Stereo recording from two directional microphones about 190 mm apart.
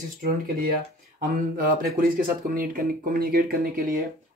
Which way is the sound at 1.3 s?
50° right (ahead or behind).